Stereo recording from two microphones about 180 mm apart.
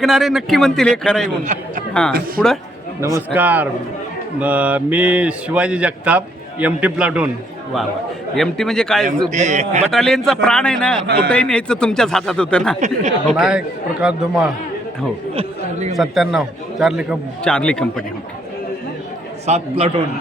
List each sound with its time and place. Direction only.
0.0 s a man's voice: centre (ahead or behind)
3.0 s speech: 15° right (ahead or behind)
8.4 s a man's voice: centre (ahead or behind)
9.3 s a man's voice: 40° right (ahead or behind)
9.9 s a man's voice: 5° left (ahead or behind)
11.0 s speech: 65° right (ahead or behind)
11.3 s a man's voice: 5° left (ahead or behind)
12.8 s a man's voice: 40° right (ahead or behind)
13.3 s a man's voice: 5° right (ahead or behind)
16.0 s a man's voice: centre (ahead or behind)
19.5 s a man's voice: 35° right (ahead or behind)